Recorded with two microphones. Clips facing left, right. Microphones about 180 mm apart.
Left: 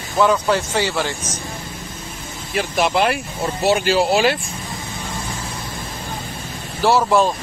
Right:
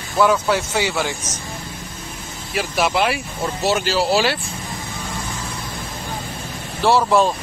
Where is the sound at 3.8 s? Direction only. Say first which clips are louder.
Left 3 dB; 50° left (ahead or behind).